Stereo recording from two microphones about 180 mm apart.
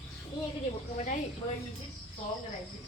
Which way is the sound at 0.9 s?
45° left (ahead or behind).